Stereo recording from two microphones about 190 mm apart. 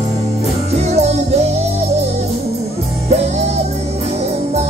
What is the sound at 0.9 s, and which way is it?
Music, 35° right (ahead or behind).